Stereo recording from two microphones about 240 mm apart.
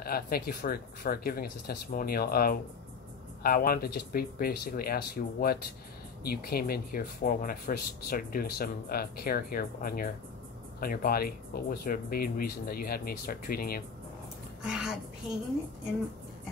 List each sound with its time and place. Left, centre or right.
0.0 s speech: left
14.6 s a woman's voice: centre